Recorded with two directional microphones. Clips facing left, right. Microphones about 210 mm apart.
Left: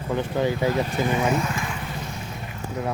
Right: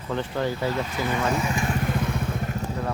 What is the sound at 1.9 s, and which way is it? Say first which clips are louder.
Motorcycle: right 7 dB; 55° right (ahead or behind).